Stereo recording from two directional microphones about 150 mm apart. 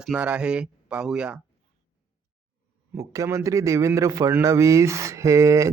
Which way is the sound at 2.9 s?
20° right (ahead or behind).